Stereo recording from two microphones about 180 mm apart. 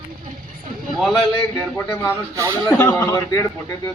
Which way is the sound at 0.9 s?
5° left (ahead or behind).